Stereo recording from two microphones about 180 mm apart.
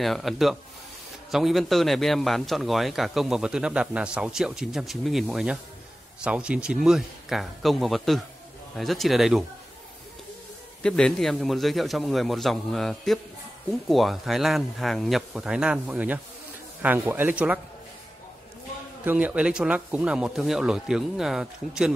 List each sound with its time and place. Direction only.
0.0 s a man's voice: centre (ahead or behind)
10.8 s a man's voice: 5° left (ahead or behind)
19.0 s a man's voice: 10° right (ahead or behind)